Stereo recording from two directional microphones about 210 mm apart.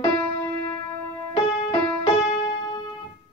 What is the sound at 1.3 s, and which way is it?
Music, 25° left (ahead or behind).